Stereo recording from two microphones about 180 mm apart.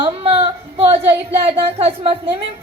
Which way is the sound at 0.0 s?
30° right (ahead or behind).